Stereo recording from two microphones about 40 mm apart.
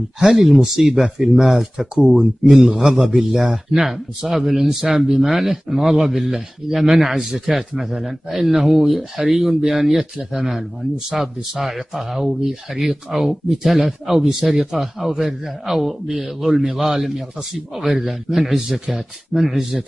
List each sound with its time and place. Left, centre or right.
0.2 s a man's voice: centre
2.5 s a man's voice: centre
3.2 s a man's voice: centre